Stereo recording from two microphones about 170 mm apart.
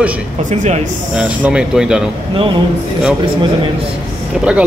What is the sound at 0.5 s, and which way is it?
Speech, 45° right (ahead or behind).